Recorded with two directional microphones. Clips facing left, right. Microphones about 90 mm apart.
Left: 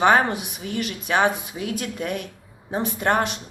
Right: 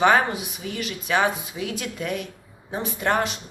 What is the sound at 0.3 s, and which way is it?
Speech, 55° left (ahead or behind).